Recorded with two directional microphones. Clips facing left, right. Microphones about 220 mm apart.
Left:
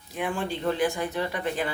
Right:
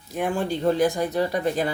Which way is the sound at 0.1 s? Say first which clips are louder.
Right 5 dB; 45° right (ahead or behind).